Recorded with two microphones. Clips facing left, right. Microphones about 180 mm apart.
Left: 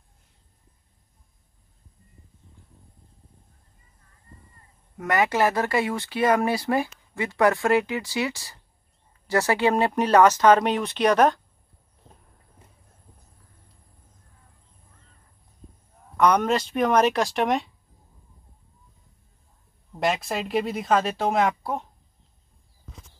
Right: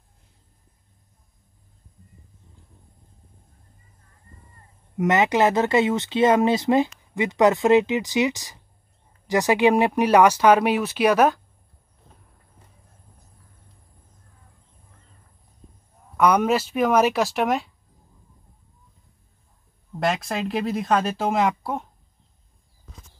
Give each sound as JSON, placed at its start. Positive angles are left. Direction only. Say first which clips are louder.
{"t": 4.9, "sound": "speech", "louder": "right 3 dB", "side_deg": -20}
{"t": 16.2, "sound": "speech", "louder": "right 1 dB", "side_deg": -5}
{"t": 19.9, "sound": "speech", "louder": "right 1 dB", "side_deg": 0}